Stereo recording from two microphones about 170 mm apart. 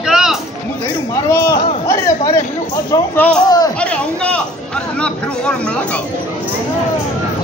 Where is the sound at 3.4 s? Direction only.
20° left (ahead or behind).